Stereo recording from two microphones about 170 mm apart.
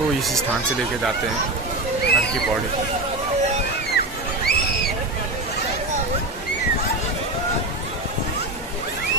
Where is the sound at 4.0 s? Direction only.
70° left (ahead or behind).